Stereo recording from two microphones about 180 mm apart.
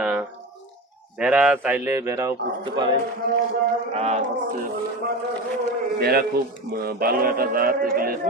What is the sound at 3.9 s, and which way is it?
Speech, 40° right (ahead or behind).